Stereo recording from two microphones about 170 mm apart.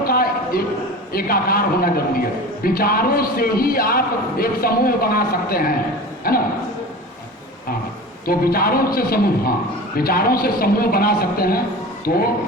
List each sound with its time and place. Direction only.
0.0 s a sound: 60° left (ahead or behind)
1.1 s a man's voice: 60° left (ahead or behind)
8.3 s a man's voice: 60° left (ahead or behind)